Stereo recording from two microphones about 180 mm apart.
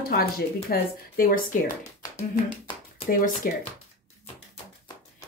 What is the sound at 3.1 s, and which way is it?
Speech, 50° left (ahead or behind).